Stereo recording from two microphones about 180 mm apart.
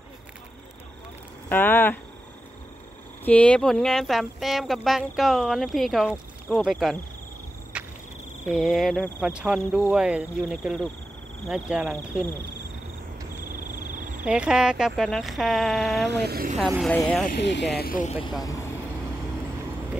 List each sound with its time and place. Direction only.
1.5 s speech: 10° left (ahead or behind)
3.3 s speech: 5° left (ahead or behind)
7.7 s a sound: 5° right (ahead or behind)
8.5 s speech: centre (ahead or behind)
14.2 s speech: 5° right (ahead or behind)
16.1 s speech: 65° right (ahead or behind)
16.5 s speech: centre (ahead or behind)
17.3 s speech: 75° left (ahead or behind); by 18.0 s 60° left (ahead or behind)
18.4 s speech: 20° left (ahead or behind)